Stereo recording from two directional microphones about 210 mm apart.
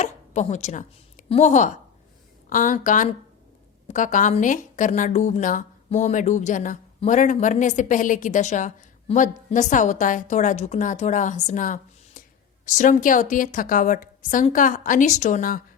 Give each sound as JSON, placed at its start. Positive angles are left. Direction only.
{"t": 0.0, "sound": "chopping", "side_deg": 35}
{"t": 1.3, "sound": "a woman's voice", "side_deg": 35}